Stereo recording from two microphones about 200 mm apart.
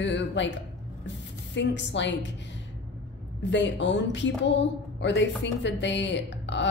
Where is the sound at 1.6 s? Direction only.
60° left (ahead or behind).